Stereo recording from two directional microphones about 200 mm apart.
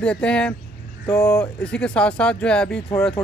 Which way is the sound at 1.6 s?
5° left (ahead or behind).